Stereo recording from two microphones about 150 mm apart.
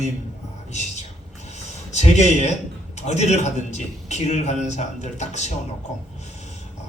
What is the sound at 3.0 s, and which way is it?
A man's voice, 50° left (ahead or behind).